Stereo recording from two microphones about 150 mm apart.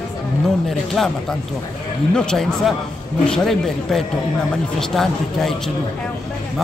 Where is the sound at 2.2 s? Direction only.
5° left (ahead or behind).